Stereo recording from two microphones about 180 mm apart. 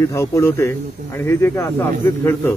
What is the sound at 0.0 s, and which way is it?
Speech, 15° left (ahead or behind).